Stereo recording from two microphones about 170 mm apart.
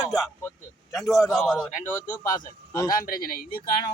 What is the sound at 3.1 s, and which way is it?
Speech, 60° left (ahead or behind).